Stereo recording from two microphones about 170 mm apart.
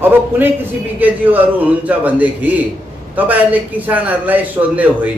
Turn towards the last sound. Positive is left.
turn(degrees=-10)  # may be behind; listen again after turning